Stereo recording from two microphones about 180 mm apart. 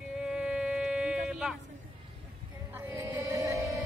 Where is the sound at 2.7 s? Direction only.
15° right (ahead or behind).